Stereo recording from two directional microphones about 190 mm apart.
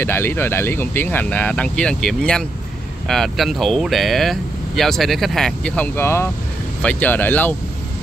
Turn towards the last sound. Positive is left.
turn(degrees=10)  # may be behind; listen again after turning